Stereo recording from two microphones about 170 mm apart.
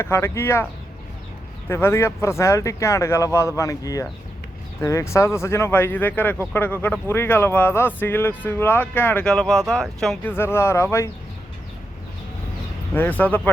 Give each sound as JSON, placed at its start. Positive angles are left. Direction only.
{"t": 0.0, "sound": "speech", "side_deg": 15}
{"t": 10.3, "sound": "speech", "side_deg": 15}
{"t": 12.9, "sound": "speech", "side_deg": 10}